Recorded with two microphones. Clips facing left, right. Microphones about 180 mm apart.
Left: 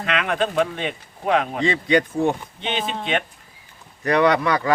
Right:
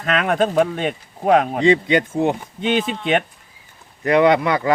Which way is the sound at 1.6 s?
20° right (ahead or behind).